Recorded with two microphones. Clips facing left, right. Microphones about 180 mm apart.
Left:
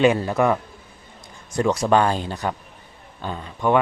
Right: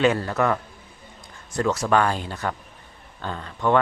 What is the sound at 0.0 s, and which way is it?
A man's voice, 15° left (ahead or behind).